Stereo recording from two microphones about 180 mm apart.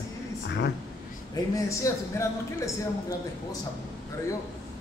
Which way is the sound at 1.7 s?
15° left (ahead or behind).